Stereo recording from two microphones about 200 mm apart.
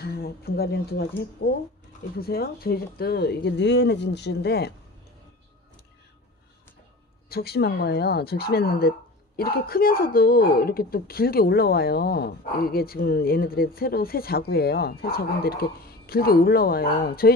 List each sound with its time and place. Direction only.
0.0 s speech: 50° left (ahead or behind)
7.2 s speech: 50° left (ahead or behind)